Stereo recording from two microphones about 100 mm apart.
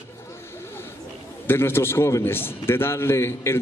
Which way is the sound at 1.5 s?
25° left (ahead or behind).